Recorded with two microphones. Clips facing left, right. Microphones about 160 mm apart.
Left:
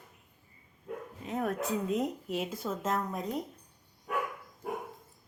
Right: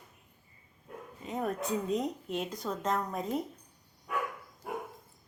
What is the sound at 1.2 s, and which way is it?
Speech, centre (ahead or behind).